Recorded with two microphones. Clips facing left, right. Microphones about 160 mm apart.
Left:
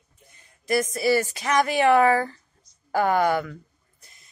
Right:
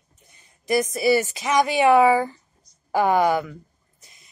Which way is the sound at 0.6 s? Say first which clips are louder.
Right 2 dB; 20° right (ahead or behind).